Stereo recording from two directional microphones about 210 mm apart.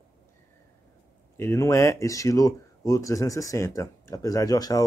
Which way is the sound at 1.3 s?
15° left (ahead or behind).